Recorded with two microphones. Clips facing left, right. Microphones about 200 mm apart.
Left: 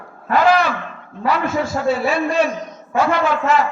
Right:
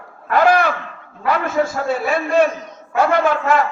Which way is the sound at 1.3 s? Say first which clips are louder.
Right 1 dB; 50° right (ahead or behind).